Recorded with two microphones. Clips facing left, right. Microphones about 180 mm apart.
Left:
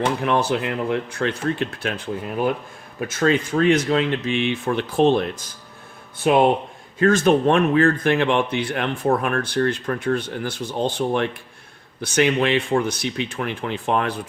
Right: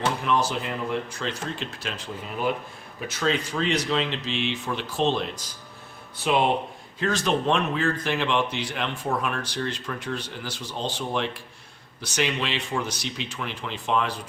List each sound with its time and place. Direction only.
0.2 s speech: 60° left (ahead or behind)